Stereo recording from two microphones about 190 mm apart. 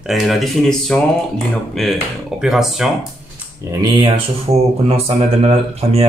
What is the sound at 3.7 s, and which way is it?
Speech, 25° right (ahead or behind).